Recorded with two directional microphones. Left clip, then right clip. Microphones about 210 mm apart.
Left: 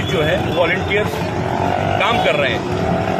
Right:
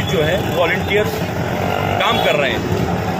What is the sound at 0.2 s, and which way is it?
Speech, centre (ahead or behind).